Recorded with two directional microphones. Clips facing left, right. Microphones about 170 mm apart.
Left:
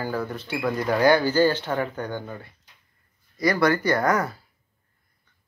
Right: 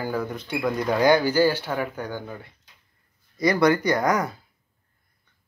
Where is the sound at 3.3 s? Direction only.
20° right (ahead or behind).